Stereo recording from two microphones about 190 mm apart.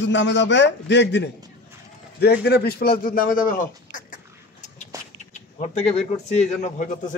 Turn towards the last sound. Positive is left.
turn(degrees=35)  # may be behind; listen again after turning